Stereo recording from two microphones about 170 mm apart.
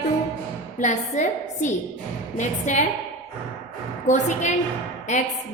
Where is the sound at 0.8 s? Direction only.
45° left (ahead or behind).